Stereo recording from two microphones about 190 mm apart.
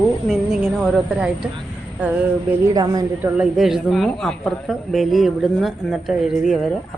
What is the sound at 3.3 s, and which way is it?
A woman's voice, 5° right (ahead or behind).